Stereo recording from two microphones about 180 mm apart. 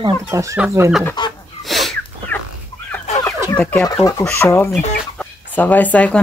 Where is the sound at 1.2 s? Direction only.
25° left (ahead or behind).